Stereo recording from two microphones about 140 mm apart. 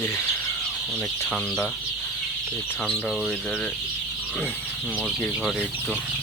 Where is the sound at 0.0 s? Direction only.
15° left (ahead or behind).